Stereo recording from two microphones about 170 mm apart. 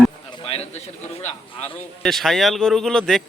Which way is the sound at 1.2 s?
40° left (ahead or behind).